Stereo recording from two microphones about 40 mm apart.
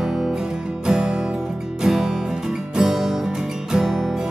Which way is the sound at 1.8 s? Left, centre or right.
Centre.